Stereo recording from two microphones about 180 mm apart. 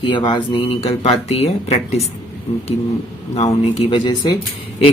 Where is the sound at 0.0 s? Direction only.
25° left (ahead or behind).